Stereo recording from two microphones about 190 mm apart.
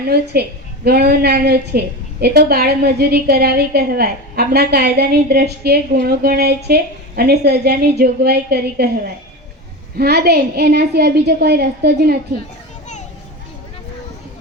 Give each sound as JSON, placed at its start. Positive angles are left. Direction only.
{"t": 0.3, "sound": "a woman's voice", "side_deg": -55}
{"t": 10.0, "sound": "a woman's voice", "side_deg": -55}